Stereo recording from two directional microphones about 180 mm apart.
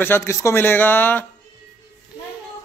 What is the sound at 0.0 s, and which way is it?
Speech, 15° left (ahead or behind).